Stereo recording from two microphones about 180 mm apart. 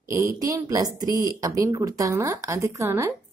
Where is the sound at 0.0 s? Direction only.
15° right (ahead or behind).